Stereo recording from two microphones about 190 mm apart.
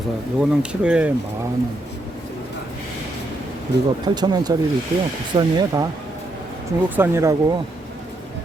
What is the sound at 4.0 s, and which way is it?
Speech, 20° right (ahead or behind).